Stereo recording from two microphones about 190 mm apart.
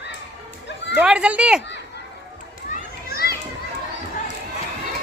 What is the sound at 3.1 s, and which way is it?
Children playing, 55° left (ahead or behind).